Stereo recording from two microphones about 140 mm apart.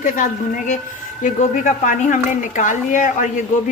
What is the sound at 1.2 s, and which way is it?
Speech, 60° left (ahead or behind).